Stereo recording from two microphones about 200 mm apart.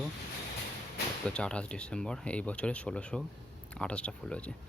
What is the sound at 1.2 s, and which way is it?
Speech, 5° left (ahead or behind).